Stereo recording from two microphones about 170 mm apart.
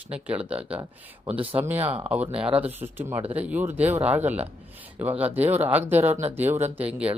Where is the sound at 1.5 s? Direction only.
10° right (ahead or behind).